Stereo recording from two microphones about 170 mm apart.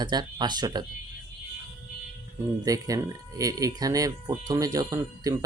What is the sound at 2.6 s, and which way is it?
Speech, 20° right (ahead or behind).